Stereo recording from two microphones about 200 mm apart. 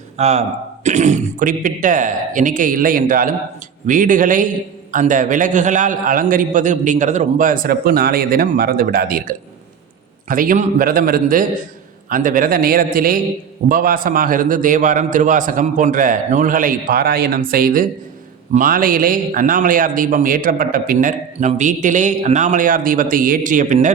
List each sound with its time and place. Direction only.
0.2 s a man's voice: 35° right (ahead or behind)